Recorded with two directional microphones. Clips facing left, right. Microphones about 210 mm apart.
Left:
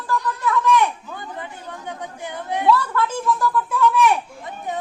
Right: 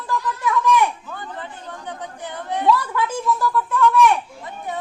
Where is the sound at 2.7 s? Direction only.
15° right (ahead or behind).